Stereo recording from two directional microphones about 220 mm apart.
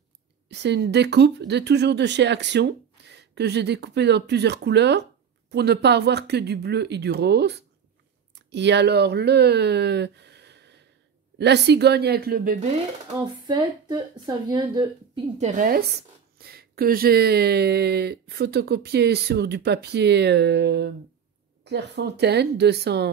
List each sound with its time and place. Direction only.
0.5 s speech: 50° right (ahead or behind)
13.5 s a woman's voice: 20° right (ahead or behind)
15.3 s a woman's voice: 35° right (ahead or behind)